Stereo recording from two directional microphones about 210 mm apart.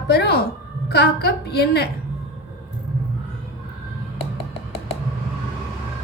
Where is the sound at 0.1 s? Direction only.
50° left (ahead or behind).